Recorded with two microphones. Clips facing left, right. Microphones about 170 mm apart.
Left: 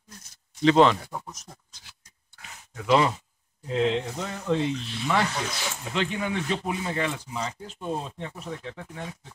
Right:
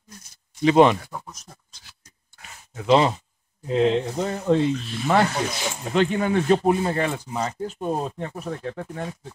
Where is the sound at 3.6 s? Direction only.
35° right (ahead or behind).